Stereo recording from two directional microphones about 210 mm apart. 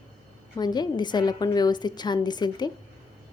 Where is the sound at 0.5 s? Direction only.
20° left (ahead or behind).